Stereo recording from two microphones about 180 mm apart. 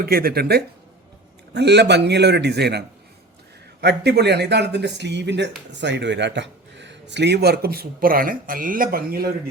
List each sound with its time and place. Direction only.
0.0 s speech: 55° right (ahead or behind)